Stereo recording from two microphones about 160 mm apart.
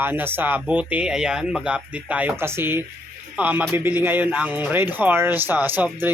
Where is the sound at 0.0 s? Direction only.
10° right (ahead or behind).